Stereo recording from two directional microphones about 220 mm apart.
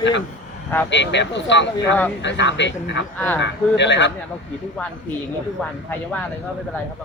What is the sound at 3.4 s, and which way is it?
Speech, 55° left (ahead or behind).